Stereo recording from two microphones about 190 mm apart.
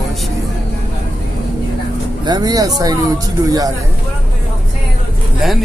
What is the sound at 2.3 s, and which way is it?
Speech, 20° right (ahead or behind).